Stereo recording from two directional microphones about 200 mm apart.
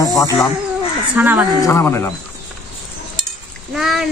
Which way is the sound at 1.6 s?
15° left (ahead or behind).